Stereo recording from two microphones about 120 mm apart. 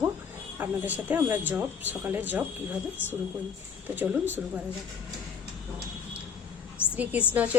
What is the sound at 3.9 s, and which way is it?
Speech, 15° right (ahead or behind).